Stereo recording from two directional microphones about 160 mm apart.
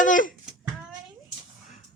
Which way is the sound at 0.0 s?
55° left (ahead or behind).